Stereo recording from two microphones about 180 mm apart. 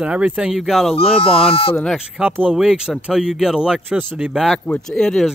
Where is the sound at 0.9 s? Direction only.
30° left (ahead or behind).